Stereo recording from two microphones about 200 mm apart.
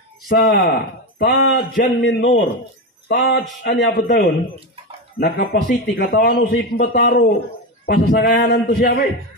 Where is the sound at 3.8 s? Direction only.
55° left (ahead or behind).